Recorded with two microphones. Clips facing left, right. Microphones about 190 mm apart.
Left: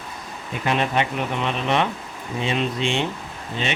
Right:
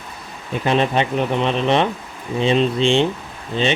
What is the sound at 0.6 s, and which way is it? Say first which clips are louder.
Speech: right 4 dB; 30° right (ahead or behind).